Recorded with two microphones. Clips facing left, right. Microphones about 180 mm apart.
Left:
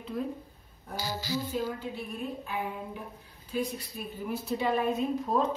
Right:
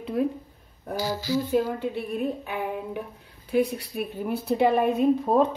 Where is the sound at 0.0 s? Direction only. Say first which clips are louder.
Right 8 dB; 70° right (ahead or behind).